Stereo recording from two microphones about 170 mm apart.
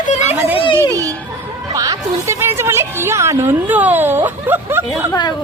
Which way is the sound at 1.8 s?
20° right (ahead or behind).